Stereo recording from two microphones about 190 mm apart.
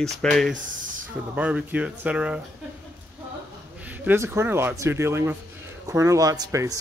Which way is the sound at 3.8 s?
10° right (ahead or behind).